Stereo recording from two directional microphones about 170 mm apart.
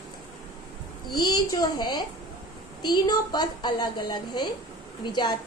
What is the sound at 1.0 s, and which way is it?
A woman's voice, 25° left (ahead or behind).